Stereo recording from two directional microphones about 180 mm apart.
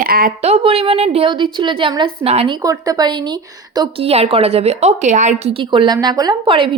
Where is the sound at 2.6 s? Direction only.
20° right (ahead or behind).